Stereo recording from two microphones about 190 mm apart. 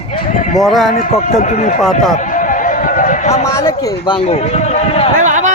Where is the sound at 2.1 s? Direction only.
45° left (ahead or behind).